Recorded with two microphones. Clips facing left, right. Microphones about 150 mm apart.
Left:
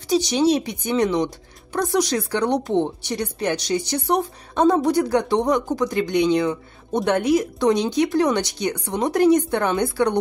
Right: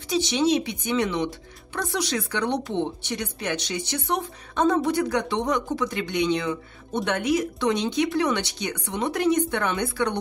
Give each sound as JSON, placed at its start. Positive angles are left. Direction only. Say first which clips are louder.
{"t": 0.1, "sound": "speech", "louder": "left 4 dB", "side_deg": 40}